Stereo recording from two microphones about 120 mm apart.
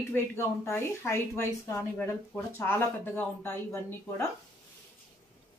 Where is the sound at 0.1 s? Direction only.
20° left (ahead or behind).